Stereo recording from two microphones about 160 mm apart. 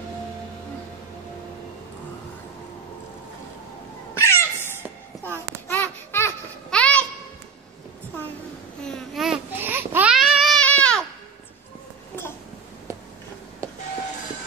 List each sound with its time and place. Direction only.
4.1 s cat: 15° left (ahead or behind)
5.7 s babbling: 15° left (ahead or behind)
8.8 s babbling: centre (ahead or behind)